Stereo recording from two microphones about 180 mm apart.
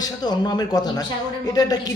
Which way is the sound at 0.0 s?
25° left (ahead or behind).